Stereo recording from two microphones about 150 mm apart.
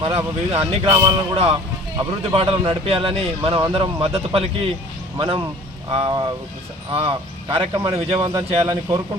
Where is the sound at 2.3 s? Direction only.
35° right (ahead or behind).